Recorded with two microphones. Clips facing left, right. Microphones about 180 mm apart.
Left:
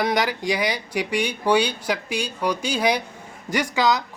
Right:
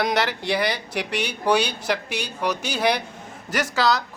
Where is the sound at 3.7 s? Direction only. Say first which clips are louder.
Even; 15° left (ahead or behind).